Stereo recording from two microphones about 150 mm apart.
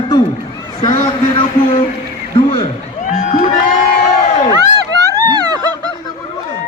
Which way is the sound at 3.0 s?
55° left (ahead or behind).